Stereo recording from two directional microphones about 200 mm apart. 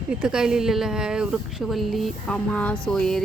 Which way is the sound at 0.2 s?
5° right (ahead or behind).